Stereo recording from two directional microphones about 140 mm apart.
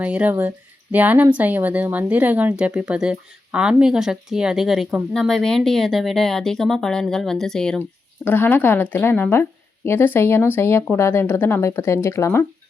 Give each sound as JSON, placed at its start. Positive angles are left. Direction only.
{"t": 0.0, "sound": "speech", "side_deg": -10}